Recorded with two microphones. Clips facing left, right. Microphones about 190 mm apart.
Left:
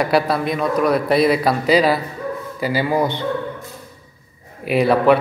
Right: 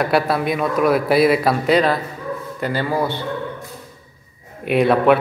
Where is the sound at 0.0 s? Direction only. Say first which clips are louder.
Even; centre (ahead or behind); by 3.3 s 15° left (ahead or behind).